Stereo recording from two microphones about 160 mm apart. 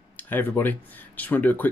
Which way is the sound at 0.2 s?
10° left (ahead or behind).